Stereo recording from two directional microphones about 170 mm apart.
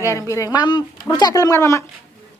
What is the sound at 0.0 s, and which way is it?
Speech, 15° left (ahead or behind).